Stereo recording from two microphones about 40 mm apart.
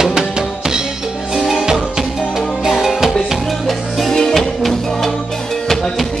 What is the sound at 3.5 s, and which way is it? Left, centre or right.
Music, centre.